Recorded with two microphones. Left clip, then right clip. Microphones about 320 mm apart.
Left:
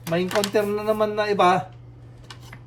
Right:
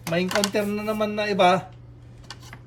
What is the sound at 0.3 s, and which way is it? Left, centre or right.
Speech, centre.